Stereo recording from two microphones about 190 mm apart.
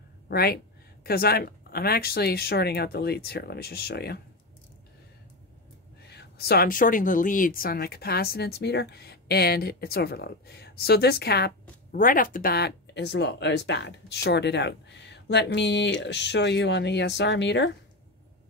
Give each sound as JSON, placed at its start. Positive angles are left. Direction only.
{"t": 0.3, "sound": "speech", "side_deg": 55}
{"t": 6.0, "sound": "speech", "side_deg": 60}
{"t": 11.9, "sound": "speech", "side_deg": 45}